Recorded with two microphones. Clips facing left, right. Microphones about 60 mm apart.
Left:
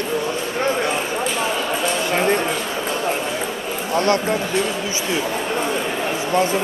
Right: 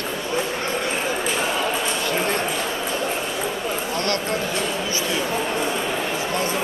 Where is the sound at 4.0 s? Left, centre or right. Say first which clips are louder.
Left 9 dB; left.